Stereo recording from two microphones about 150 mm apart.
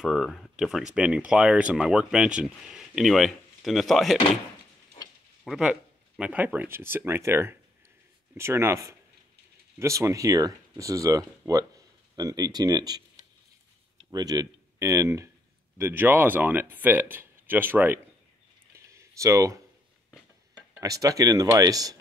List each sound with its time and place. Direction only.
0.0 s speech: centre (ahead or behind)
5.4 s speech: 5° right (ahead or behind)
18.9 s a sound: 20° right (ahead or behind)
20.8 s speech: 25° right (ahead or behind)